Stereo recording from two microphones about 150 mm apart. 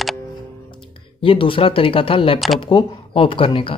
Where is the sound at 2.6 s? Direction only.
35° left (ahead or behind).